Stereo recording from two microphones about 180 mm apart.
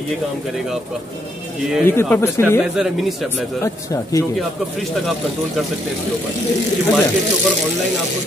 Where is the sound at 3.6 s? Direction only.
15° left (ahead or behind).